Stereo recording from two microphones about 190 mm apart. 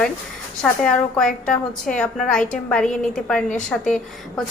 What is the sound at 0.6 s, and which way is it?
A woman's voice, 5° left (ahead or behind).